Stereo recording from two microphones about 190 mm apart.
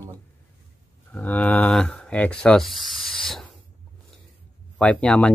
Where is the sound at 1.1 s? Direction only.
5° left (ahead or behind).